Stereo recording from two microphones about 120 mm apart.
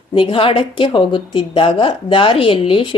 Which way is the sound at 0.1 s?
45° left (ahead or behind).